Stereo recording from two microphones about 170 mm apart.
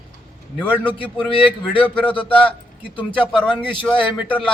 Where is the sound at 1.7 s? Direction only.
10° left (ahead or behind).